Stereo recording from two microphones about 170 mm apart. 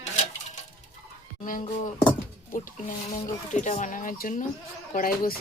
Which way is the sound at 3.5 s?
45° left (ahead or behind).